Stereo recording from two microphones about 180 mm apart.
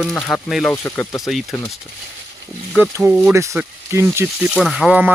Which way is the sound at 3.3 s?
15° right (ahead or behind).